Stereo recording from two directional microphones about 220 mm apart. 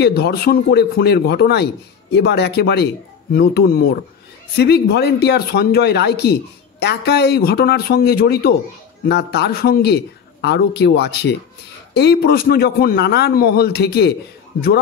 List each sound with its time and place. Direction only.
0.0 s speech: 45° left (ahead or behind)